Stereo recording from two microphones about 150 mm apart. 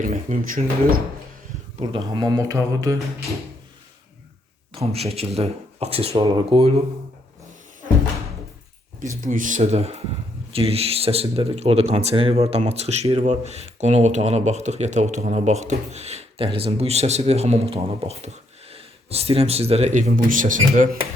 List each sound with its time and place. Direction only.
0.0 s speech: 65° right (ahead or behind)
1.8 s speech: 25° right (ahead or behind)
4.7 s speech: 40° right (ahead or behind)
9.2 s speech: 60° right (ahead or behind)